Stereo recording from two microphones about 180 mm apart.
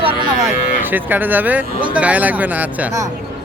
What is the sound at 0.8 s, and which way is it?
Speech, 10° right (ahead or behind).